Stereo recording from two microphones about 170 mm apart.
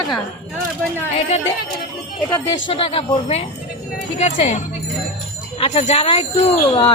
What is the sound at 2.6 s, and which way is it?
Speech, 35° left (ahead or behind).